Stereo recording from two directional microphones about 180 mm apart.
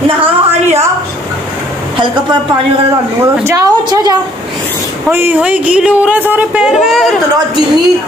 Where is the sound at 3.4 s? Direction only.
20° right (ahead or behind); by 7.1 s centre (ahead or behind).